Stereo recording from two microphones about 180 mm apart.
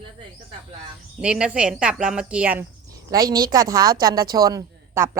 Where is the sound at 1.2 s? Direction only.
5° right (ahead or behind).